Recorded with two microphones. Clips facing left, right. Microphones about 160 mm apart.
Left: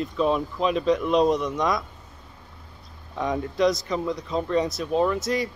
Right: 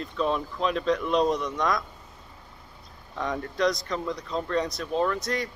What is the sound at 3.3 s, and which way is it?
Speech, 5° left (ahead or behind).